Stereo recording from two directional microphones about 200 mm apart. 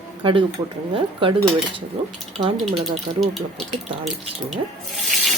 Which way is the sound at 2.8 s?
Centre (ahead or behind).